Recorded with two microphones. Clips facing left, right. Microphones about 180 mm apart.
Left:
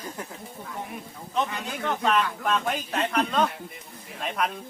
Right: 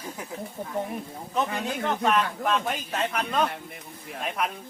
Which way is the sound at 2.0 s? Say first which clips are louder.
Even; centre (ahead or behind).